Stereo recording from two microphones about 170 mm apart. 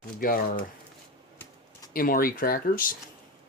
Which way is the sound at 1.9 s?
60° left (ahead or behind).